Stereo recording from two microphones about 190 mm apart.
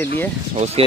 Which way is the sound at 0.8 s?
30° right (ahead or behind).